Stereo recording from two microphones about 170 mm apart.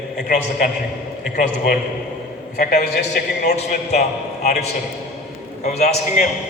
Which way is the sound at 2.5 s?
65° left (ahead or behind).